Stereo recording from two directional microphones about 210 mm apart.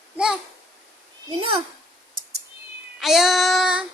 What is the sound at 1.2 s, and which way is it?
Speech, 25° right (ahead or behind).